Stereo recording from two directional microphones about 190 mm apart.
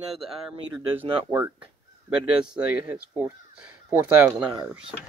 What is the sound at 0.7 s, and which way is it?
Speech, 10° right (ahead or behind).